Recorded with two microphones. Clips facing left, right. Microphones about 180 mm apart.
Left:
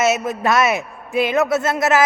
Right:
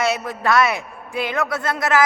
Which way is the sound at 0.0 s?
20° left (ahead or behind).